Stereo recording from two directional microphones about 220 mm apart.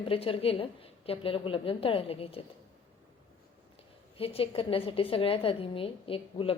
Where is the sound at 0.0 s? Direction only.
25° left (ahead or behind).